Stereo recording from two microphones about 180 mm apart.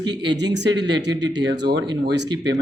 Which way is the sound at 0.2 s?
75° right (ahead or behind).